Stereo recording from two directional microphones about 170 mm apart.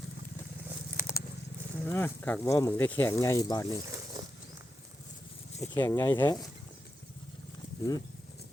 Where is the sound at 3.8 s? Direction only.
20° right (ahead or behind).